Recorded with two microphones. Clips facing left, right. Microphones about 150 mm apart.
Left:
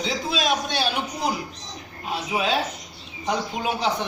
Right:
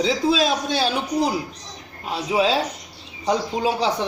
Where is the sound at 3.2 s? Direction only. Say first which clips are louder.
Right 5 dB; 30° right (ahead or behind).